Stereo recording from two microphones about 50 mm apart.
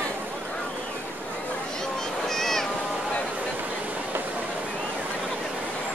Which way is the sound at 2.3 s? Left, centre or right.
Centre.